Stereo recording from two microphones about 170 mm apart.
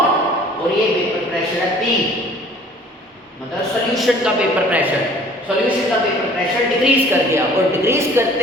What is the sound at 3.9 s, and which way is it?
Speech, centre (ahead or behind).